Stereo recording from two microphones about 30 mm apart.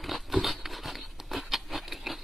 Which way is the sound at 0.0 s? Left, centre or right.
Centre.